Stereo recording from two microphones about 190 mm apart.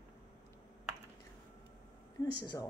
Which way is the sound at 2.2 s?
15° left (ahead or behind).